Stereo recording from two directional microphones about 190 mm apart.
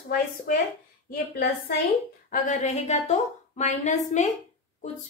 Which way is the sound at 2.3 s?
40° left (ahead or behind).